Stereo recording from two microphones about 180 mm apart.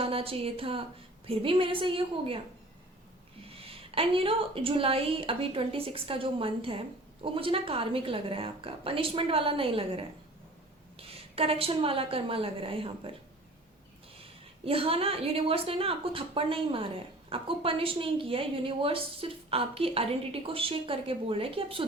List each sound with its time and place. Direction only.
0.0 s a woman's voice: 30° right (ahead or behind)
3.5 s a woman's voice: 30° right (ahead or behind)
14.6 s a woman's voice: 30° right (ahead or behind)